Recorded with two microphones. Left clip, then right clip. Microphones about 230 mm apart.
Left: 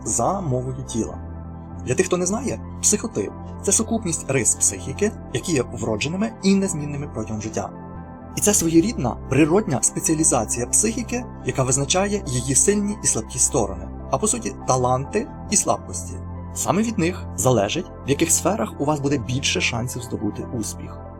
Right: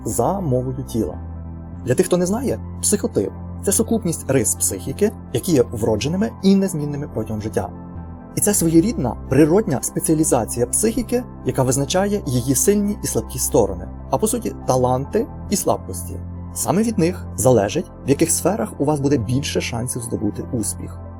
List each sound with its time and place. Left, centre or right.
0.0 s speech: right